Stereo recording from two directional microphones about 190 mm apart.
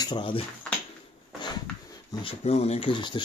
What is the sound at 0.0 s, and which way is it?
Speech, 25° left (ahead or behind).